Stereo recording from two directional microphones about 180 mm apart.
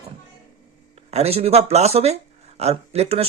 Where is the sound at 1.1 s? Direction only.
35° right (ahead or behind).